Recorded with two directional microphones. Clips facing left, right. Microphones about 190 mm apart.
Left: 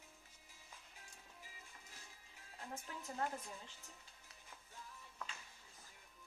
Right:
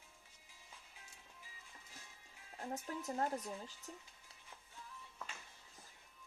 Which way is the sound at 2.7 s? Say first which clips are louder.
Right 5 dB; 40° right (ahead or behind).